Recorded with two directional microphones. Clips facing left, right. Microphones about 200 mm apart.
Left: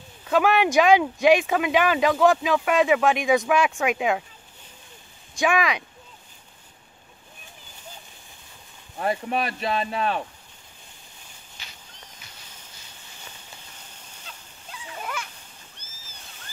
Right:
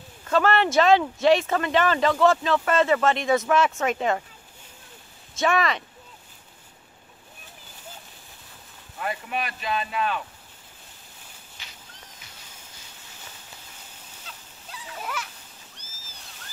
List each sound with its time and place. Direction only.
0.2 s speech: 10° left (ahead or behind)
3.3 s speech: centre (ahead or behind)
5.6 s speech: centre (ahead or behind)
8.9 s speech: 35° left (ahead or behind)
14.2 s a sound: centre (ahead or behind)